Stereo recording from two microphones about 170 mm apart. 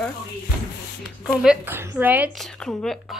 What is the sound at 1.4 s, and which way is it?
Speech, 10° right (ahead or behind).